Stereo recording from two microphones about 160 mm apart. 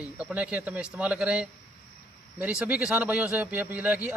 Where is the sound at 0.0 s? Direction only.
10° right (ahead or behind).